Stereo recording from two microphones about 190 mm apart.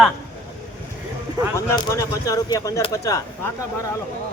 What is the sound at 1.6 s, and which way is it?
Speech, 15° left (ahead or behind).